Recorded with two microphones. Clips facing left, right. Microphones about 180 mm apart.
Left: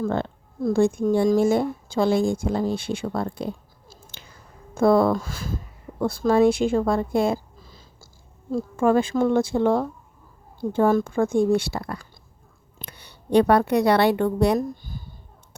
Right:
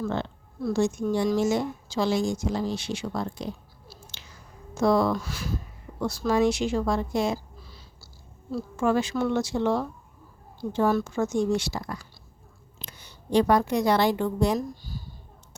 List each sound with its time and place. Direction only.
0.0 s speech: 50° left (ahead or behind)
4.7 s speech: 55° left (ahead or behind)
8.5 s a woman's voice: 50° left (ahead or behind)